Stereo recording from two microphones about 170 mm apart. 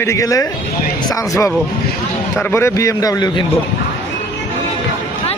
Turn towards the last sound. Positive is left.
turn(degrees=20)  # may be behind; listen again after turning